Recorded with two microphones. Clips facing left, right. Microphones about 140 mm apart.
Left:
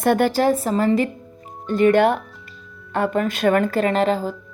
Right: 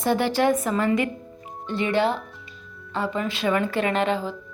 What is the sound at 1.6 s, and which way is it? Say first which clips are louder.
A woman's voice: left 7 dB; 45° left (ahead or behind).